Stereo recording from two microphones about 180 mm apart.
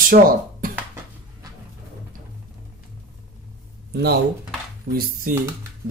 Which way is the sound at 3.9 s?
65° right (ahead or behind).